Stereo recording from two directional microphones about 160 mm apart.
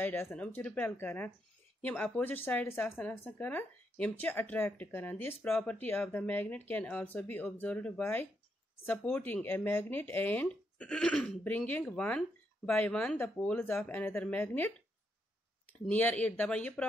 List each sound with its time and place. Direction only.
0.0 s speech: 15° left (ahead or behind)
15.9 s speech: 10° left (ahead or behind)